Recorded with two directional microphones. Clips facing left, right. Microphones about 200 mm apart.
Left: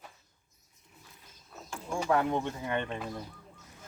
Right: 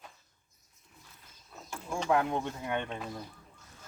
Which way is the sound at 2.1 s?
5° right (ahead or behind).